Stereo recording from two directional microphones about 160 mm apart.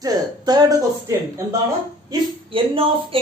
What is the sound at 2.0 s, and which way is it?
A man's voice, 35° right (ahead or behind).